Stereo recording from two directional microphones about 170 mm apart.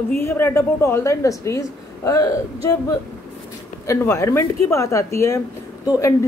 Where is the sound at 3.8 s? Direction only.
15° left (ahead or behind).